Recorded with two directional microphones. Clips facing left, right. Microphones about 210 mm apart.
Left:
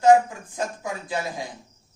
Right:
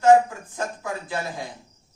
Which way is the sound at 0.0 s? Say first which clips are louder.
Even; 15° left (ahead or behind).